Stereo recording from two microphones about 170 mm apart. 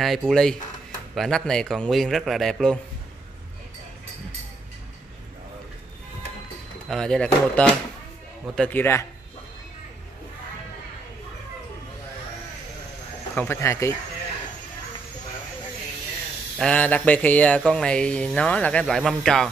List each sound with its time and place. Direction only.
0.3 s speech: 5° left (ahead or behind)
6.9 s speech: 5° left (ahead or behind)
13.3 s speech: 10° left (ahead or behind)
16.5 s speech: 5° left (ahead or behind)